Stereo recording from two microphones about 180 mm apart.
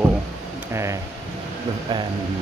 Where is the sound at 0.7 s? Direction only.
15° right (ahead or behind).